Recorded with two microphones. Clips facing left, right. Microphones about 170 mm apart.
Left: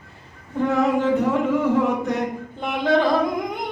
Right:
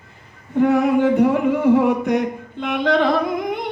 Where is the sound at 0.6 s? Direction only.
60° right (ahead or behind).